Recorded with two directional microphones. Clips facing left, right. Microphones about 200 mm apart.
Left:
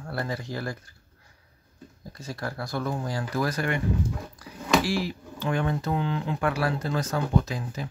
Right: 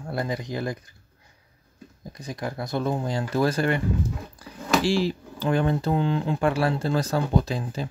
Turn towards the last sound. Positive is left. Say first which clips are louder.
# right 2 dB
turn(degrees=-30)  # may be behind; listen again after turning